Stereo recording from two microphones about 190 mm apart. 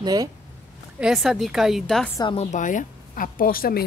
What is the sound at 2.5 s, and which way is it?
Speech, 40° left (ahead or behind).